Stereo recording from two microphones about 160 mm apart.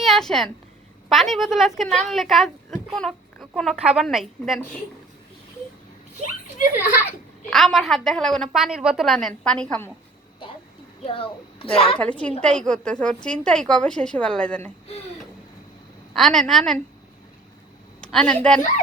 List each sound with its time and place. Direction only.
0.0 s a woman's voice: centre (ahead or behind)
7.5 s a woman's voice: centre (ahead or behind)
11.0 s a child's voice: 35° left (ahead or behind)
11.9 s a woman's voice: 10° left (ahead or behind)
16.1 s a woman's voice: centre (ahead or behind)
18.0 s a woman's voice: 5° left (ahead or behind)